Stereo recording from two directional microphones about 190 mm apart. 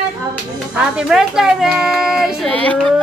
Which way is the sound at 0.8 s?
5° right (ahead or behind).